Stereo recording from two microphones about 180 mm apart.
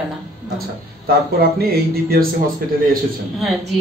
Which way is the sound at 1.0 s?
55° right (ahead or behind).